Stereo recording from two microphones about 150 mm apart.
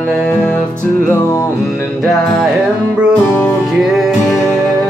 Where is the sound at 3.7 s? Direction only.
Centre (ahead or behind).